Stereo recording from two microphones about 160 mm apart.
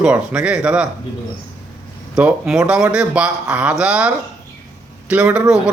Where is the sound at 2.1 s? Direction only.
5° right (ahead or behind).